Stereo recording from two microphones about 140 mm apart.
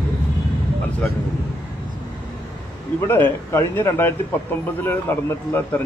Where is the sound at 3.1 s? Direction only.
15° left (ahead or behind).